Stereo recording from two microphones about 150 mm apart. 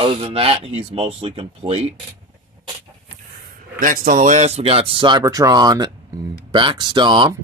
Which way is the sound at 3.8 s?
65° right (ahead or behind).